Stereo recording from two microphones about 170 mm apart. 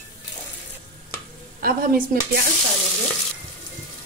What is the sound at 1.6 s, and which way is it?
Speech, 60° right (ahead or behind).